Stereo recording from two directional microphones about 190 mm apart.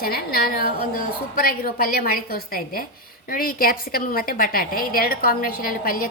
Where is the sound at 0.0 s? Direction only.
50° left (ahead or behind).